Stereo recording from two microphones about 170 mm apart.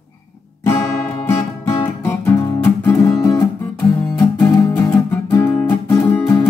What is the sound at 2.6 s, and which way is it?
Guitar, 15° left (ahead or behind).